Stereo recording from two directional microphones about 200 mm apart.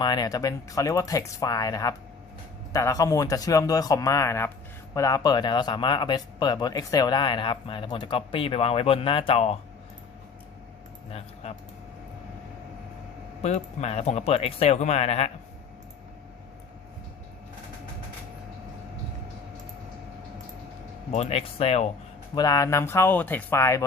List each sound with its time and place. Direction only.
0.0 s speech: 20° left (ahead or behind)
13.4 s speech: 35° left (ahead or behind)
21.1 s speech: 30° left (ahead or behind)
22.4 s speech: 15° left (ahead or behind)